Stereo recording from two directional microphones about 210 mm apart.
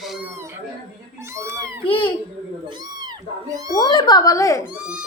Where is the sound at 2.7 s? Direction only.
20° right (ahead or behind).